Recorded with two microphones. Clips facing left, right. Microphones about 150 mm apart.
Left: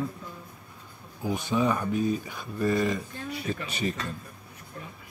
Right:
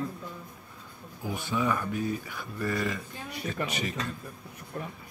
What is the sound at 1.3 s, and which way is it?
Speech, 20° left (ahead or behind).